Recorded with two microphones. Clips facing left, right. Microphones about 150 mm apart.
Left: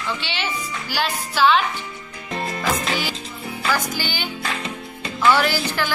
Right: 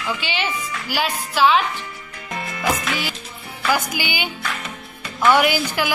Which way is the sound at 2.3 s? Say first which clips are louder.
Even; 30° left (ahead or behind).